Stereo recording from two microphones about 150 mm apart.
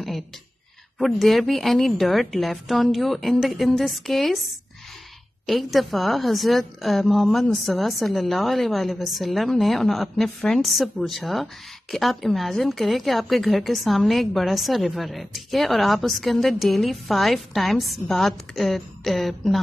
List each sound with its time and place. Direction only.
0.9 s a woman's voice: centre (ahead or behind)
5.5 s a woman's voice: centre (ahead or behind)